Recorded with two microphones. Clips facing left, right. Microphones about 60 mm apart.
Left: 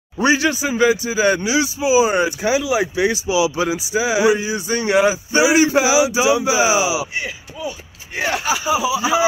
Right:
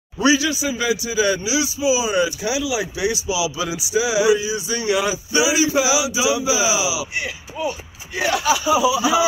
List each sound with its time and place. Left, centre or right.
0.2 s a man's voice: left
8.2 s speech: left